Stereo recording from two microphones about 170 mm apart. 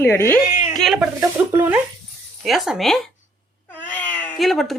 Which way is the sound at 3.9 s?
10° left (ahead or behind).